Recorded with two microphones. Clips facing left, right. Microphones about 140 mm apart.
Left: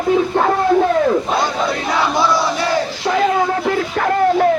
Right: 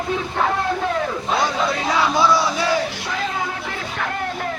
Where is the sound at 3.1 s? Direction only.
45° left (ahead or behind).